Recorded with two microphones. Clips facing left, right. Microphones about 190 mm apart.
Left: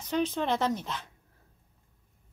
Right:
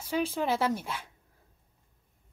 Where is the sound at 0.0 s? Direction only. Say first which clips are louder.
Left 1 dB; 10° right (ahead or behind).